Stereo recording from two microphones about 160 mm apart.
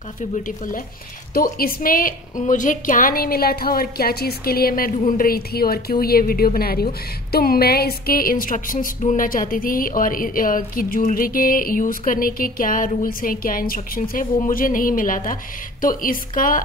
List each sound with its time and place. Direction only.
1.3 s a woman's voice: 65° left (ahead or behind)